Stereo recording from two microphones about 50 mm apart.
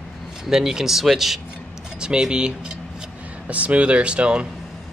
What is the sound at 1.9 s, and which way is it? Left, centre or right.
Speech, centre.